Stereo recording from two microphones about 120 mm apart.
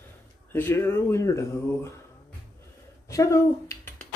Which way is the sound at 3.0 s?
25° left (ahead or behind).